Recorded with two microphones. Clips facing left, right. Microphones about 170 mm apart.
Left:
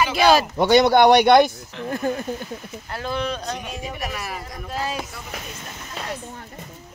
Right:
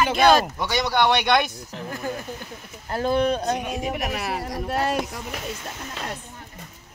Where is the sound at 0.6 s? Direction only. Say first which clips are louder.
Left 8 dB; 60° left (ahead or behind); by 1.5 s 40° left (ahead or behind).